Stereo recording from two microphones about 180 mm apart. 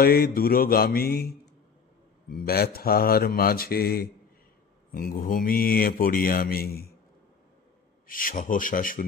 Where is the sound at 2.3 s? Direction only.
55° left (ahead or behind).